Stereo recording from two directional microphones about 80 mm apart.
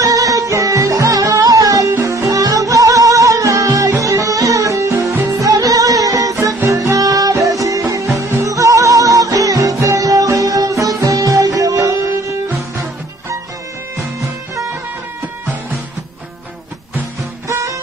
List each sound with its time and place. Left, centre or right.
0.0 s music: right
17.5 s music: right